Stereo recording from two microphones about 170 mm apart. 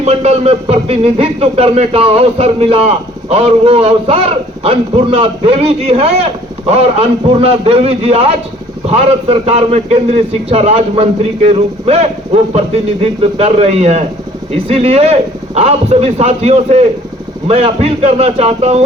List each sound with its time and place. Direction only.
0.0 s speech: 40° right (ahead or behind)